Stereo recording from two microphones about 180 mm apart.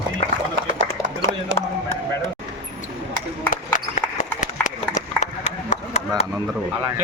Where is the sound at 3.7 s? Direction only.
45° left (ahead or behind).